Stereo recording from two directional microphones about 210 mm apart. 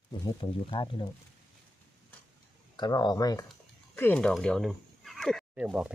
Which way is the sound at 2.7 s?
20° left (ahead or behind).